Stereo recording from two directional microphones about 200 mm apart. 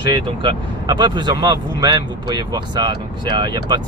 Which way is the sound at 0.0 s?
25° right (ahead or behind).